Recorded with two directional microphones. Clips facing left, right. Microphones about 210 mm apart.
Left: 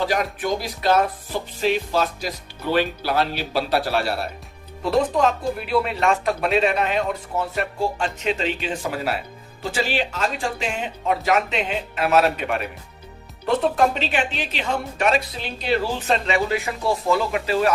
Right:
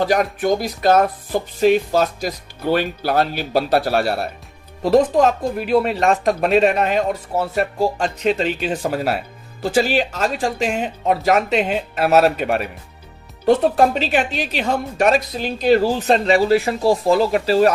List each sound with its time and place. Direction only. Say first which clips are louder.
0.0 s music: right 5 dB; 45° right (ahead or behind)
4.8 s speech: right 5 dB; 45° right (ahead or behind)